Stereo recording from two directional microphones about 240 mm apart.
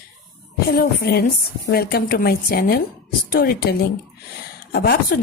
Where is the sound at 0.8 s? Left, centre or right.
Left.